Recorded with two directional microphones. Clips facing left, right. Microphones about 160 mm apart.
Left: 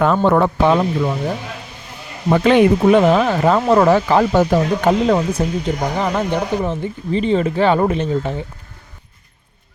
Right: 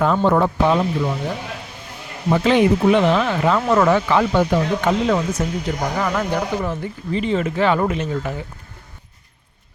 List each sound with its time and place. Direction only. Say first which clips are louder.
0.0 s speech: left 2 dB; 65° left (ahead or behind)
2.3 s speech: left 3 dB; 60° left (ahead or behind); by 5.2 s 35° left (ahead or behind)
5.4 s speech: left 3 dB; 25° left (ahead or behind)